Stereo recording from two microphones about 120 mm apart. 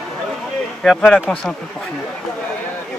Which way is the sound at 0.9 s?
5° left (ahead or behind).